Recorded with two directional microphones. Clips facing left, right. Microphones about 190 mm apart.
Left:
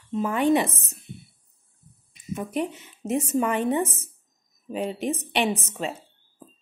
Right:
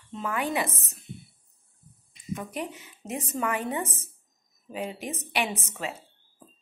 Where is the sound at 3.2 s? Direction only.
25° left (ahead or behind).